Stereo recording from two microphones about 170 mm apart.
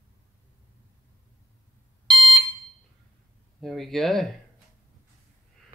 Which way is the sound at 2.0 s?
30° right (ahead or behind).